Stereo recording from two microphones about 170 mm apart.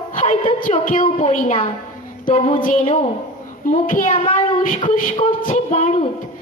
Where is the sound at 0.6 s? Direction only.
50° left (ahead or behind).